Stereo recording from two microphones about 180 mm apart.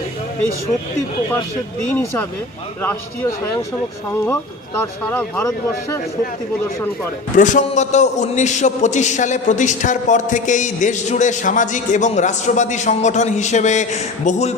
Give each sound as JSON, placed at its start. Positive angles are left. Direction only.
{"t": 1.9, "sound": "speech", "side_deg": 10}
{"t": 4.8, "sound": "speech", "side_deg": 10}
{"t": 7.3, "sound": "a man's voice", "side_deg": 45}